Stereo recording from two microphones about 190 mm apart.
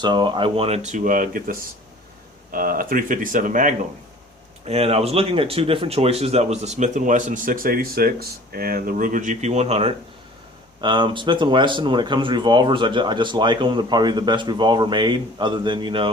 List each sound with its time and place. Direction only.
0.0 s speech: 25° right (ahead or behind); by 3.8 s 45° right (ahead or behind)
4.6 s speech: 35° right (ahead or behind)